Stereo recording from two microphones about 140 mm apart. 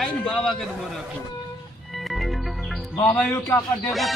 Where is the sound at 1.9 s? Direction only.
Centre (ahead or behind).